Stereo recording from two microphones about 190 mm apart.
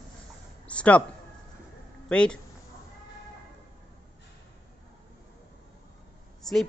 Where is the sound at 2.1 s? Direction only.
5° left (ahead or behind).